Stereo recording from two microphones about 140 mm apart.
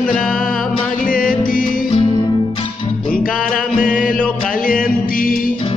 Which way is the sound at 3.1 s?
90° left.